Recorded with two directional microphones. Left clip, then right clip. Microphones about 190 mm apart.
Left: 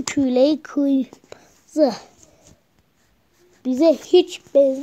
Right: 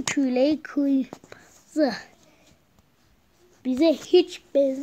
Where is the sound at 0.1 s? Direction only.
20° left (ahead or behind).